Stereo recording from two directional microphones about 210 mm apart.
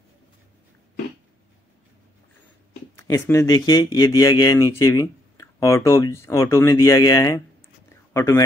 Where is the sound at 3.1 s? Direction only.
15° left (ahead or behind).